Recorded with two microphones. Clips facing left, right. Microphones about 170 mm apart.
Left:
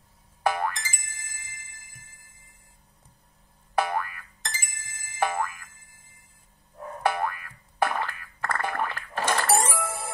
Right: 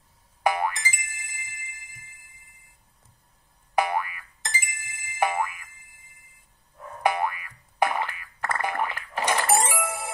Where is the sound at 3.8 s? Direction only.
15° right (ahead or behind).